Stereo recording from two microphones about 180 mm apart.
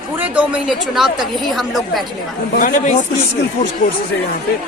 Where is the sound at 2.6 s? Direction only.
45° left (ahead or behind).